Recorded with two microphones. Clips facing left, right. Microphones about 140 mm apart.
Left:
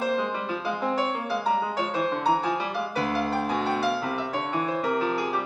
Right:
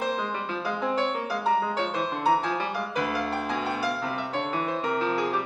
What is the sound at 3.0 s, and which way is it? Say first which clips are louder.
Music: left 2 dB; 30° left (ahead or behind).